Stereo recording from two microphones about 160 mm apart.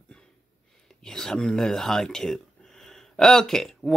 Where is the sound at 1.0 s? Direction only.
5° left (ahead or behind).